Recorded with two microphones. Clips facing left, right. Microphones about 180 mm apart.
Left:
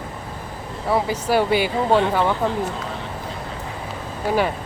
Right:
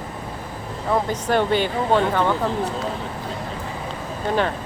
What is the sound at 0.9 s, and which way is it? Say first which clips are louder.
Speech: left 1 dB; 10° left (ahead or behind).